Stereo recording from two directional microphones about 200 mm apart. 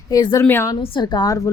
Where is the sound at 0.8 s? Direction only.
25° left (ahead or behind).